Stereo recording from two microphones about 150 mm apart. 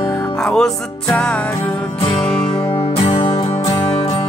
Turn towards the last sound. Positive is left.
turn(degrees=40)  # may be behind; listen again after turning